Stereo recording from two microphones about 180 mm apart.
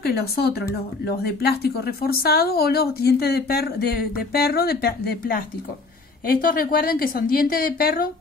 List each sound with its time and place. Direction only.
0.0 s a woman's voice: 60° left (ahead or behind)